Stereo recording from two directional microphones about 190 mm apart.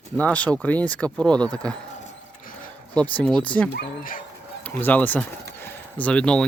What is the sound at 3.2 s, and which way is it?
Speech, 5° left (ahead or behind).